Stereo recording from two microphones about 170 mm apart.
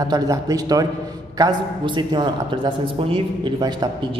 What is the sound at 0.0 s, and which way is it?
Speech, 20° right (ahead or behind).